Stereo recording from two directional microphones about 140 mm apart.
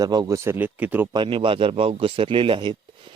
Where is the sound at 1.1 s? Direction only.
35° right (ahead or behind).